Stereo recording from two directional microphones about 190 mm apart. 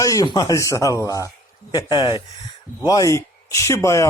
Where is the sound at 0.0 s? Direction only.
20° left (ahead or behind).